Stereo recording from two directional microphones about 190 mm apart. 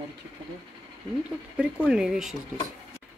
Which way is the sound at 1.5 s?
5° right (ahead or behind).